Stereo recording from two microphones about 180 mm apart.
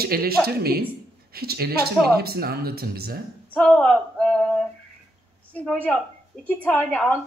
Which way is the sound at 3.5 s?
5° left (ahead or behind).